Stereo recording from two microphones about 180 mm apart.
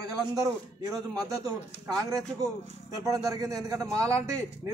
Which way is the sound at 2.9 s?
20° right (ahead or behind).